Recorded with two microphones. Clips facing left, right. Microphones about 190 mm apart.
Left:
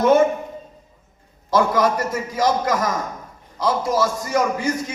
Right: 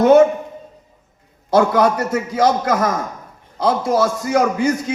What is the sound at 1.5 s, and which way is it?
Speech, 65° right (ahead or behind).